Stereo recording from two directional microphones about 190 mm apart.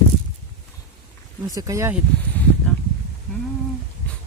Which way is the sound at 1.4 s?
15° right (ahead or behind).